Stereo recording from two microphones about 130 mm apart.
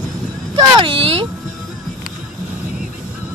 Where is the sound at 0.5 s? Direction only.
40° right (ahead or behind).